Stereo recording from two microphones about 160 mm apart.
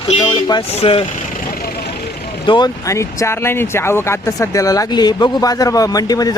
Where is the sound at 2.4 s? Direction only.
30° left (ahead or behind).